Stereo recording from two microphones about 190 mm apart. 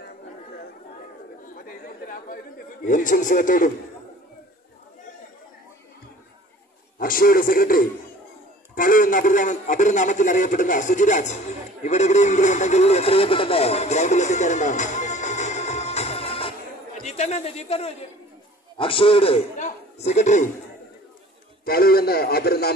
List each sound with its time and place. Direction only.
1.9 s chatter: 45° left (ahead or behind)
2.8 s a man's voice: 40° left (ahead or behind)
7.0 s a man's voice: 50° left (ahead or behind)
21.6 s a man's voice: 55° left (ahead or behind)